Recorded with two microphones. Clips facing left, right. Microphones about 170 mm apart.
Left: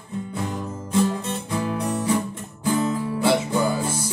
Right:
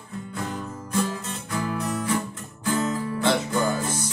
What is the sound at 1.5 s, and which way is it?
Music, 25° left (ahead or behind).